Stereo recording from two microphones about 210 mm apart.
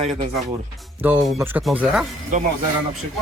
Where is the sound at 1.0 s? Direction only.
5° right (ahead or behind).